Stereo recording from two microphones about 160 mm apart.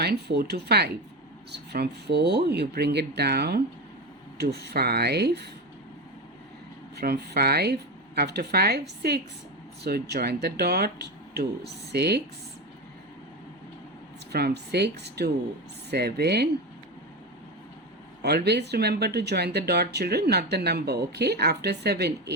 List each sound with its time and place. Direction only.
0.0 s speech: 90° right
7.0 s speech: 80° right
14.3 s speech: 85° right
18.2 s speech: 90° right